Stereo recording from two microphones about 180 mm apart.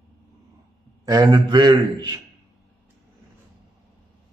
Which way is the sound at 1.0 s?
20° right (ahead or behind).